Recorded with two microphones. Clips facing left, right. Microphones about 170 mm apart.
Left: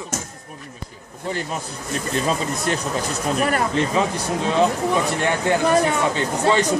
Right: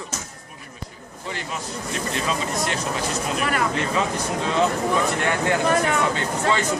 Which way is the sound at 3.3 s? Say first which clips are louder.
Left 5 dB; 40° left (ahead or behind).